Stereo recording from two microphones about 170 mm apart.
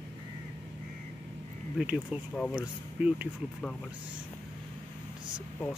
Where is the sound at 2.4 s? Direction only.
5° right (ahead or behind).